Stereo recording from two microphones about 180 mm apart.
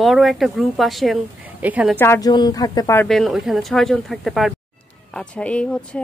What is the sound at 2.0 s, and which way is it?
Speech, 15° left (ahead or behind).